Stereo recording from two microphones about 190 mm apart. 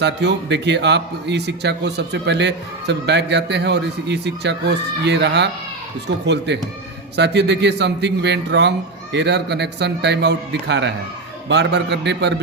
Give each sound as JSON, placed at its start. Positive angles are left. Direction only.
{"t": 0.0, "sound": "a man's voice", "side_deg": -65}